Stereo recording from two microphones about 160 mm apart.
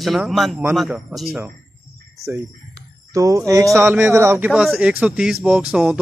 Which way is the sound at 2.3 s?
15° right (ahead or behind).